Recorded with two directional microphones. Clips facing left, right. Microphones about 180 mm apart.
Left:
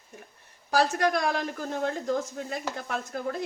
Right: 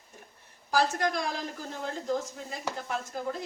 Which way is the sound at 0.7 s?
65° left (ahead or behind).